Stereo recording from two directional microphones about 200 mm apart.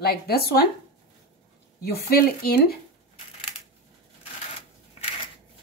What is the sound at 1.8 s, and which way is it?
Speech, 50° left (ahead or behind).